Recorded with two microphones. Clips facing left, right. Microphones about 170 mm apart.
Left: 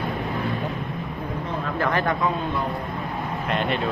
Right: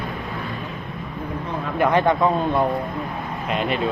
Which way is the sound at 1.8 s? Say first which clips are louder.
Right 6 dB; 20° right (ahead or behind).